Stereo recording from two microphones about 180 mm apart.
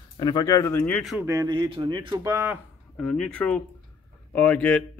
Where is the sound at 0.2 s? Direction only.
20° left (ahead or behind).